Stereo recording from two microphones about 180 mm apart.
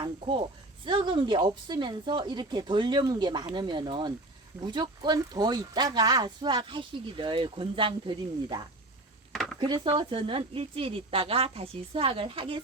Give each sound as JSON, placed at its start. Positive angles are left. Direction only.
{"t": 0.0, "sound": "speech", "side_deg": -30}
{"t": 9.3, "sound": "a sound", "side_deg": 0}
{"t": 9.6, "sound": "a woman's voice", "side_deg": -25}